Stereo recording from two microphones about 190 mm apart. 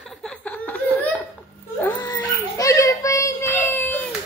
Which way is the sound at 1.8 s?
10° left (ahead or behind).